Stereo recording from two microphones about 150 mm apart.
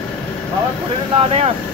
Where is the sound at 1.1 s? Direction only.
45° right (ahead or behind).